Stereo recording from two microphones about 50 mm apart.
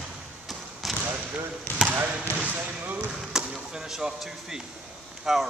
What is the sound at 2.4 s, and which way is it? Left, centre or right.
Speech, right.